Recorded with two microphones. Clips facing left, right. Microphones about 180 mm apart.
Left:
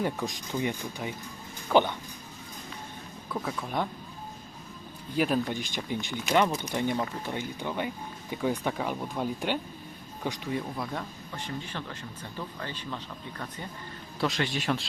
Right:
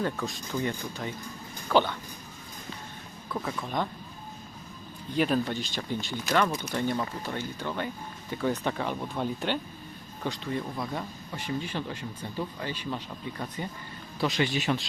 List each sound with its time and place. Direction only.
0.0 s speech: 15° left (ahead or behind)
3.3 s a man's voice: 5° left (ahead or behind)
5.1 s speech: 5° left (ahead or behind)
10.8 s speech: 5° right (ahead or behind)
14.2 s a man's voice: centre (ahead or behind)